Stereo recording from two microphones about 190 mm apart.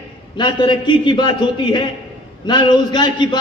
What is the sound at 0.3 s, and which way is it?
A man's voice, 25° left (ahead or behind).